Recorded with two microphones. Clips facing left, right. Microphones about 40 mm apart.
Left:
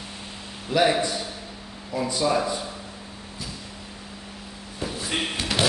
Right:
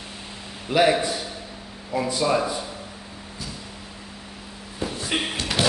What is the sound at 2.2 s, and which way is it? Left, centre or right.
Speech, centre.